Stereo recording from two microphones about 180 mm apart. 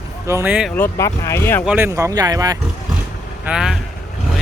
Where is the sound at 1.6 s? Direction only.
10° right (ahead or behind).